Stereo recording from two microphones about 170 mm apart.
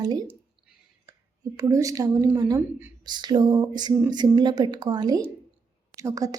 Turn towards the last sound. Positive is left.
turn(degrees=-20)  # may be behind; listen again after turning